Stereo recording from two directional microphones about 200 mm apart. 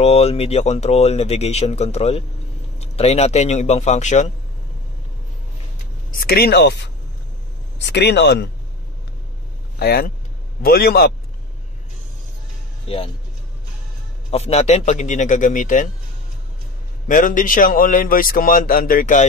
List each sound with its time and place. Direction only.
0.0 s speech: 30° left (ahead or behind)
6.1 s a man's voice: 50° left (ahead or behind)
7.9 s speech: 55° left (ahead or behind)
9.8 s a man's voice: 50° left (ahead or behind)
12.8 s speech: 30° left (ahead or behind)
14.3 s speech: 30° left (ahead or behind)
17.1 s a man's voice: 40° left (ahead or behind)